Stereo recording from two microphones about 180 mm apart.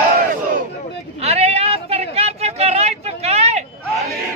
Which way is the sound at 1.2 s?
35° right (ahead or behind).